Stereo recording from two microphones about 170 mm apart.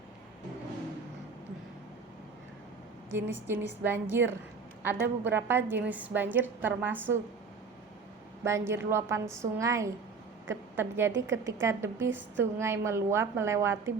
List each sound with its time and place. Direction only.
3.2 s a woman's voice: 15° right (ahead or behind)
8.4 s a woman's voice: 15° right (ahead or behind)